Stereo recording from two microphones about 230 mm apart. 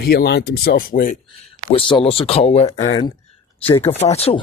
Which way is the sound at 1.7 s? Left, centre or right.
Left.